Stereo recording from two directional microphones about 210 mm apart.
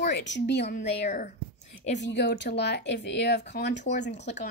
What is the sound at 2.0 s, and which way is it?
Speech, 55° left (ahead or behind).